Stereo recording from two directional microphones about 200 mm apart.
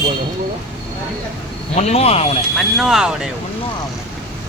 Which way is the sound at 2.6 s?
Centre (ahead or behind).